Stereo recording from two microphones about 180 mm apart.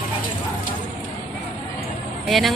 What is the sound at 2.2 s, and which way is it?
Speech, centre (ahead or behind).